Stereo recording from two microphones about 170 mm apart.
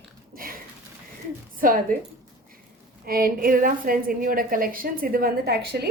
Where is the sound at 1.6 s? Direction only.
55° right (ahead or behind).